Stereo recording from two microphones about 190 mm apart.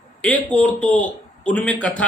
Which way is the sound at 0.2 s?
5° left (ahead or behind).